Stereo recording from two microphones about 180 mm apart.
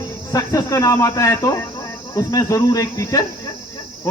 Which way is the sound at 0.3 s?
20° left (ahead or behind).